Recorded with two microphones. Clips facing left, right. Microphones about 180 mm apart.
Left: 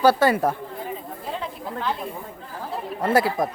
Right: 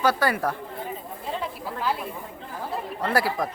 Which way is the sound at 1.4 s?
5° right (ahead or behind).